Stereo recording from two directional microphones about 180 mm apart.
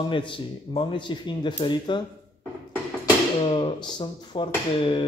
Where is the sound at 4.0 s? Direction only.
30° left (ahead or behind).